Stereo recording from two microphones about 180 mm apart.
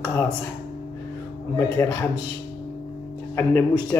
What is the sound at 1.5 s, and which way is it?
Speech, 15° left (ahead or behind).